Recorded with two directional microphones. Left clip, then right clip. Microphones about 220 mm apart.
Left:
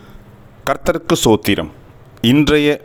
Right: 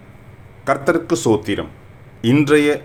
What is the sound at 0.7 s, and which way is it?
Speech, 40° left (ahead or behind).